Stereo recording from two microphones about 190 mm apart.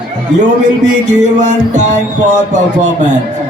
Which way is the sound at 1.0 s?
40° right (ahead or behind).